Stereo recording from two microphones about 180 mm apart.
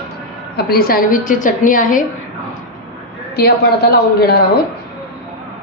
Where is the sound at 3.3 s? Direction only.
60° left (ahead or behind).